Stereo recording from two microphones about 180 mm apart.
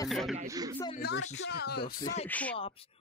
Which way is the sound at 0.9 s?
65° left (ahead or behind).